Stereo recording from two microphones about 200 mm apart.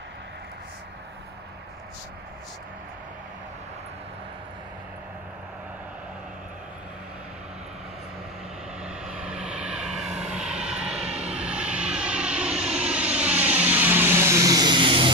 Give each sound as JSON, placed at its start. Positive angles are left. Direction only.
{"t": 8.8, "sound": "vehicle", "side_deg": -5}
{"t": 11.0, "sound": "vehicle", "side_deg": -30}
{"t": 11.3, "sound": "vehicle", "side_deg": -5}